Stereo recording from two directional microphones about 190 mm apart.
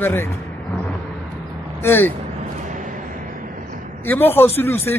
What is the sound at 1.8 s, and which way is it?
Speech, 10° left (ahead or behind).